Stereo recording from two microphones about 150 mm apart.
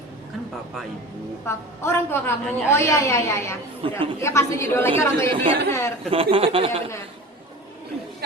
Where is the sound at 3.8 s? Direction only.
35° right (ahead or behind).